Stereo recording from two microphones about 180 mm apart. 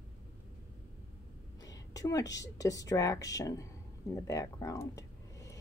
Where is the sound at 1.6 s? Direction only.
20° left (ahead or behind).